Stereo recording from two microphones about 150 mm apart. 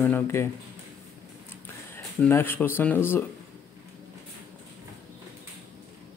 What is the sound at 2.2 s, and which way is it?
Speech, 15° left (ahead or behind).